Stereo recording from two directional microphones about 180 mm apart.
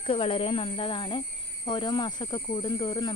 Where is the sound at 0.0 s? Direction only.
30° left (ahead or behind).